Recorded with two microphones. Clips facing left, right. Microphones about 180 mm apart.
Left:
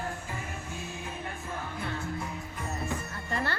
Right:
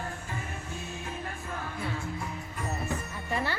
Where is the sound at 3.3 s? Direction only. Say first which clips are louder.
Right 1 dB; 10° right (ahead or behind).